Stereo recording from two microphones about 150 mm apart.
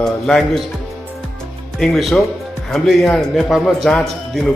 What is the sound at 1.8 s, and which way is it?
A man's voice, centre (ahead or behind).